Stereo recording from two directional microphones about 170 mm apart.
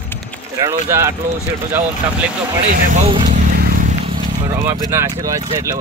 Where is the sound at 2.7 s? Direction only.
45° right (ahead or behind).